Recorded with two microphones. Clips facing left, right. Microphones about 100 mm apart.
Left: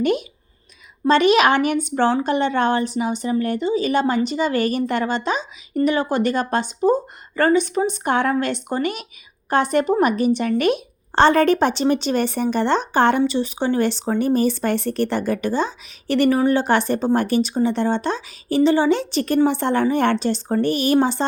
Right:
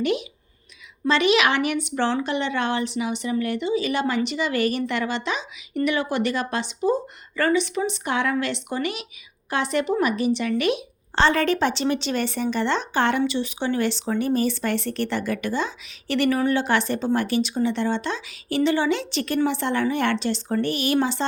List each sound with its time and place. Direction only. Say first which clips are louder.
0.0 s a woman's voice: left 4 dB; 45° left (ahead or behind)